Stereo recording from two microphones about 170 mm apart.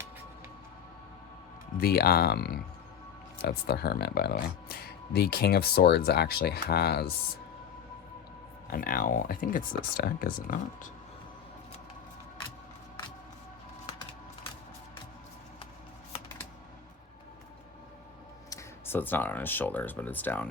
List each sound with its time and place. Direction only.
1.8 s speech: 65° left (ahead or behind)
8.7 s speech: 60° left (ahead or behind)
13.8 s a sound: 30° left (ahead or behind)
18.5 s speech: 10° left (ahead or behind)